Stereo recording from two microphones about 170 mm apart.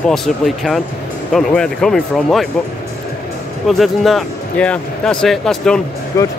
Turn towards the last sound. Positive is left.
turn(degrees=15)  # may be behind; listen again after turning